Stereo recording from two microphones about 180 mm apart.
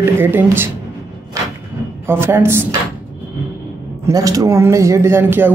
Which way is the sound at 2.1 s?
15° right (ahead or behind).